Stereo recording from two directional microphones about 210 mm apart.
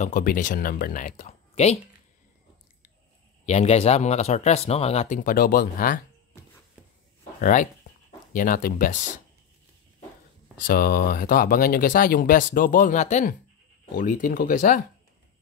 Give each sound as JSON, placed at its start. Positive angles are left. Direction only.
{"t": 0.0, "sound": "speech", "side_deg": 40}
{"t": 3.4, "sound": "speech", "side_deg": 30}
{"t": 7.3, "sound": "speech", "side_deg": 40}
{"t": 10.6, "sound": "speech", "side_deg": 45}